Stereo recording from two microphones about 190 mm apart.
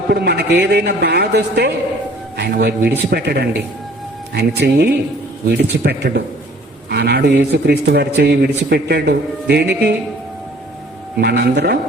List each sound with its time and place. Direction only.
0.1 s a man's voice: 60° right (ahead or behind)
11.2 s a man's voice: 60° right (ahead or behind)